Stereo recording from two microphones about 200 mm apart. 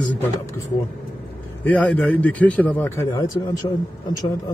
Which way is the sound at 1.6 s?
5° left (ahead or behind).